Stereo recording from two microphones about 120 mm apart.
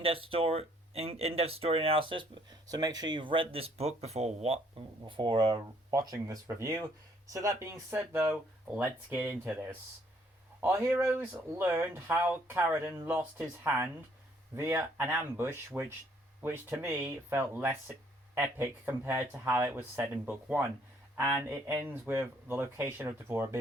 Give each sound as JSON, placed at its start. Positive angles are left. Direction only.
{"t": 0.0, "sound": "speech", "side_deg": -50}
{"t": 5.0, "sound": "speech", "side_deg": -45}
{"t": 5.9, "sound": "speech", "side_deg": -30}
{"t": 7.9, "sound": "speech", "side_deg": -10}